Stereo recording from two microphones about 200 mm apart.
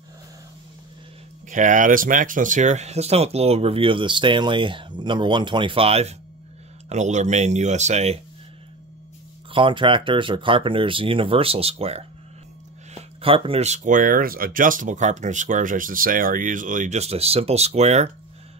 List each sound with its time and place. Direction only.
1.5 s speech: 40° right (ahead or behind)
9.5 s speech: 25° right (ahead or behind)
13.2 s speech: 30° right (ahead or behind)